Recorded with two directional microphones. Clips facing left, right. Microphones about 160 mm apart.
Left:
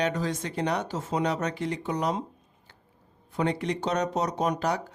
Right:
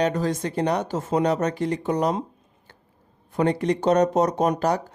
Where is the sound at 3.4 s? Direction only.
45° right (ahead or behind).